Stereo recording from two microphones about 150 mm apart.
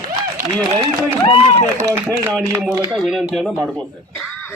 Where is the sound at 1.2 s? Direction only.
35° left (ahead or behind).